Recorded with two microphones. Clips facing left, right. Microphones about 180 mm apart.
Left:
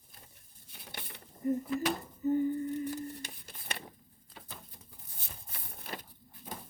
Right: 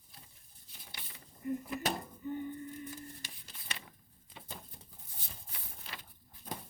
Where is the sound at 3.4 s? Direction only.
50° left (ahead or behind).